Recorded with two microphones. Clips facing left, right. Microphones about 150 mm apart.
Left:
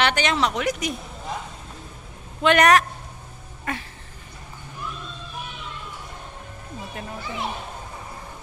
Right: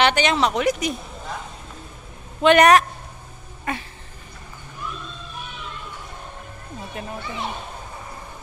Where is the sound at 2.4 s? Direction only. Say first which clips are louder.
Right 3 dB; 25° right (ahead or behind).